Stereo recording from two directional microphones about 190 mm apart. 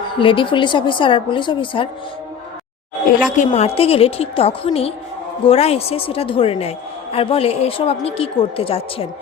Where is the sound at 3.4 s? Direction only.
30° left (ahead or behind).